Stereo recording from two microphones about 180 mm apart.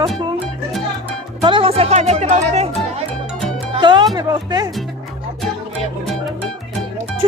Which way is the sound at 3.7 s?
25° right (ahead or behind).